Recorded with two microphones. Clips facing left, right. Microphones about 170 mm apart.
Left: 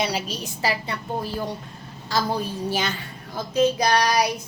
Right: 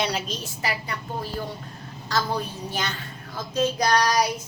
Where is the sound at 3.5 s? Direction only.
10° left (ahead or behind).